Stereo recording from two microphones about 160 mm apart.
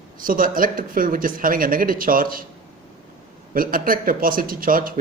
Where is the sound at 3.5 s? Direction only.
60° right (ahead or behind).